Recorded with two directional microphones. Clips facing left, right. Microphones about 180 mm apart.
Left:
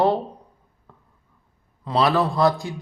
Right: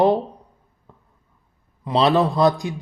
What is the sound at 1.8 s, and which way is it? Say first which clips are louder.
Speech: right 3 dB; 20° right (ahead or behind).